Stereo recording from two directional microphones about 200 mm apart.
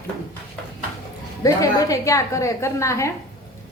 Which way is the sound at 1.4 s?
15° left (ahead or behind).